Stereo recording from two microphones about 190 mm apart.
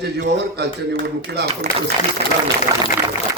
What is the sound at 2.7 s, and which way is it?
Speech, 15° right (ahead or behind).